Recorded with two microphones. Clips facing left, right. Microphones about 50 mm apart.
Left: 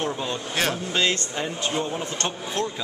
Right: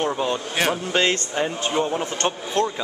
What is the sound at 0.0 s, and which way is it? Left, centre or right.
Speech, centre.